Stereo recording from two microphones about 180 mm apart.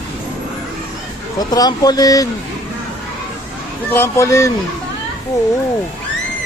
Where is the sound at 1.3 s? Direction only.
20° left (ahead or behind).